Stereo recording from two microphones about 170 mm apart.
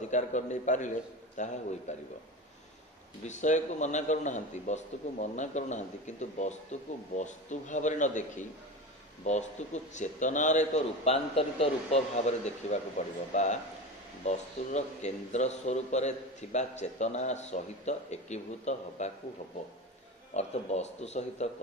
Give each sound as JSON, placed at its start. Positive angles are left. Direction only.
{"t": 0.1, "sound": "a man's voice", "side_deg": 45}
{"t": 3.3, "sound": "a man's voice", "side_deg": 45}
{"t": 20.3, "sound": "a man's voice", "side_deg": 40}